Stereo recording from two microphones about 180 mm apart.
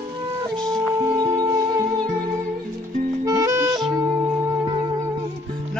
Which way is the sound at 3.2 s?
15° right (ahead or behind).